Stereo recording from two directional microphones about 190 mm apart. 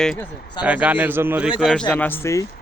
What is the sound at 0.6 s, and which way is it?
Speech, 5° right (ahead or behind).